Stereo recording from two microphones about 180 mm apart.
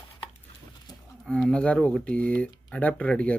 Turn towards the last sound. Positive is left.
turn(degrees=5)  # may be behind; listen again after turning